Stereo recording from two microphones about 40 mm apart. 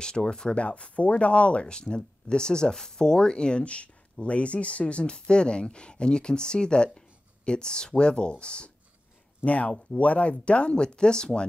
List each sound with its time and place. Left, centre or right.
0.0 s speech: centre
0.6 s speech: left